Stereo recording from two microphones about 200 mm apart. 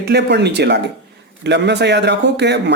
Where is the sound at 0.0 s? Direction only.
55° right (ahead or behind).